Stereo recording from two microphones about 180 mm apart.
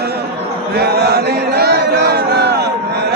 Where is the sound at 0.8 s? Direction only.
60° right (ahead or behind).